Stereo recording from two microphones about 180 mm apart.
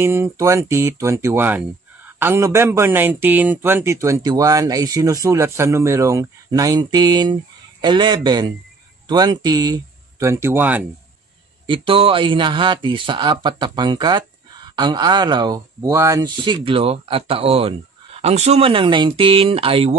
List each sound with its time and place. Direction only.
0.0 s speech: 15° right (ahead or behind)
11.6 s speech: 30° right (ahead or behind)